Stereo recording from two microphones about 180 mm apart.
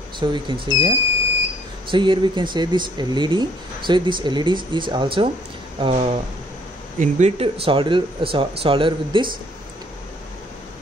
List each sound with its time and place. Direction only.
0.2 s speech: 25° right (ahead or behind)